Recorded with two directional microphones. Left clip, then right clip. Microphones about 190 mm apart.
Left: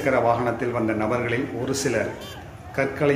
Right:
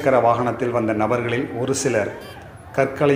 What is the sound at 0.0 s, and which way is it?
A man's voice, 15° right (ahead or behind).